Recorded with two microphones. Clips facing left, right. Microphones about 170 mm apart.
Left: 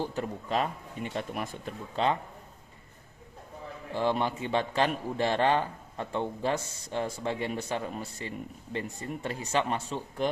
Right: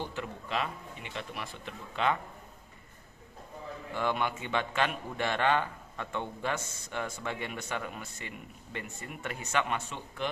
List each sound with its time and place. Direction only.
0.0 s a man's voice: 40° left (ahead or behind)
3.9 s a man's voice: 30° left (ahead or behind)